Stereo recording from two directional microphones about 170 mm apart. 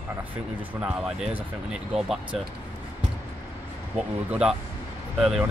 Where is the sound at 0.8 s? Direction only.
5° right (ahead or behind).